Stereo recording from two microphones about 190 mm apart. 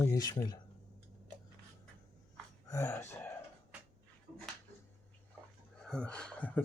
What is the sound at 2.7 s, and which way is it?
Speech, 15° left (ahead or behind).